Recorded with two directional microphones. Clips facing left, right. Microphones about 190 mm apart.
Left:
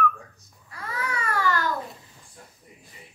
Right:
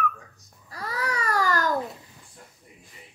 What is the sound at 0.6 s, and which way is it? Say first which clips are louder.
Babbling: right 2 dB; 35° right (ahead or behind).